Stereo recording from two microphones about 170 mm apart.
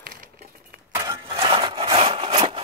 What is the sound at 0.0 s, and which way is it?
Coin, 60° right (ahead or behind).